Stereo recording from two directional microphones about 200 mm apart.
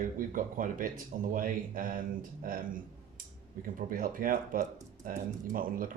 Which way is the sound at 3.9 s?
45° right (ahead or behind).